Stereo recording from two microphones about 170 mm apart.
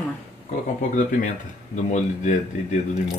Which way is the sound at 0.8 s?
45° left (ahead or behind).